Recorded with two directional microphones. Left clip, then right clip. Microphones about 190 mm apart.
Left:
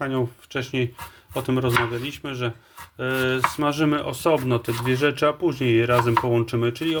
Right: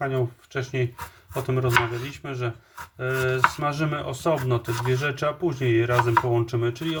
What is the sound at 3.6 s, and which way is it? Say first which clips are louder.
Speech: left 4 dB; 35° left (ahead or behind).